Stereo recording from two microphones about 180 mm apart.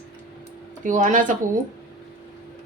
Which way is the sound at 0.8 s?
45° right (ahead or behind).